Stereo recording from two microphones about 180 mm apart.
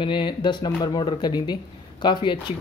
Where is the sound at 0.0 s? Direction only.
25° left (ahead or behind).